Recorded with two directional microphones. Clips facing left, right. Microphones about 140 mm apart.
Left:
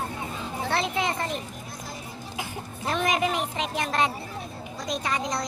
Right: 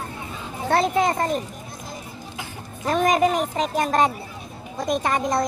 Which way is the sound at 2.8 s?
45° right (ahead or behind).